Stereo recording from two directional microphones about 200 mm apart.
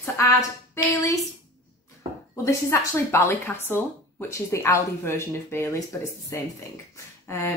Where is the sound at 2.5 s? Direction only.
15° left (ahead or behind).